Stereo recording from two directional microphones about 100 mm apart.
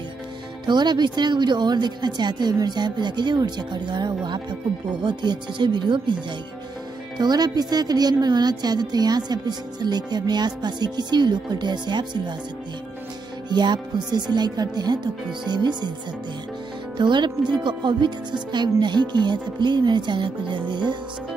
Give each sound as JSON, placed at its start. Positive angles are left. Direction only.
{"t": 0.7, "sound": "speech", "side_deg": -50}
{"t": 7.2, "sound": "speech", "side_deg": -45}
{"t": 13.5, "sound": "speech", "side_deg": -45}
{"t": 16.9, "sound": "speech", "side_deg": -50}